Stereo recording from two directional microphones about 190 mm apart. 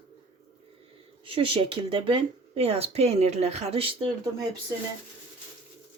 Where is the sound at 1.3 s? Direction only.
30° right (ahead or behind).